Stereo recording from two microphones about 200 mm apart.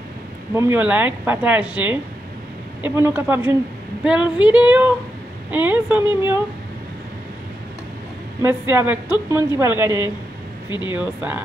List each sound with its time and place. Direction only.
0.6 s speech: 10° right (ahead or behind)
4.0 s female singing: 5° right (ahead or behind)
5.5 s speech: 10° right (ahead or behind)
8.4 s speech: 10° right (ahead or behind)
10.7 s speech: 20° left (ahead or behind)
11.0 s speech: 10° right (ahead or behind)